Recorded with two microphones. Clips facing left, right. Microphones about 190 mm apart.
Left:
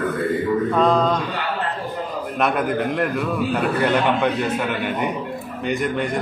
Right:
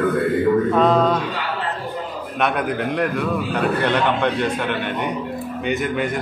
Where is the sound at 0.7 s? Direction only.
5° right (ahead or behind).